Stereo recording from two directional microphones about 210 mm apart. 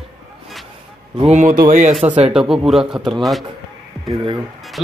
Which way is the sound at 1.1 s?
30° right (ahead or behind).